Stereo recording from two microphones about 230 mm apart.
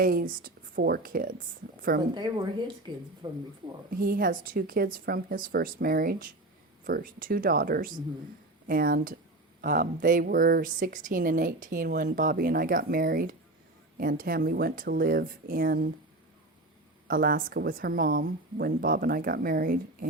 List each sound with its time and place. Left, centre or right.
0.0 s speech: right
2.1 s speech: centre
3.9 s speech: right
17.1 s speech: right